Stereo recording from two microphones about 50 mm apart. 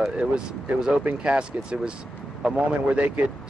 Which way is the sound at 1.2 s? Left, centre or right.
Centre.